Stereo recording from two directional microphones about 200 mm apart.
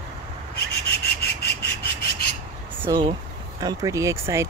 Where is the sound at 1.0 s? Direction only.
55° left (ahead or behind).